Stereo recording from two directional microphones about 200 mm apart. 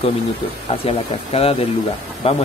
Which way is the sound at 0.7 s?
30° left (ahead or behind).